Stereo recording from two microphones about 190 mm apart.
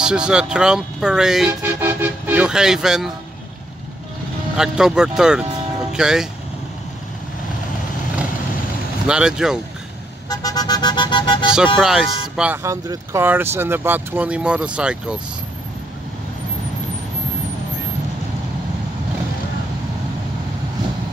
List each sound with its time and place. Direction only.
0.0 s speech: 5° right (ahead or behind)
4.6 s speech: 5° right (ahead or behind)
9.0 s speech: 5° right (ahead or behind)
10.3 s a sound: 20° left (ahead or behind)
11.5 s speech: 5° right (ahead or behind)
12.6 s speech: 15° right (ahead or behind)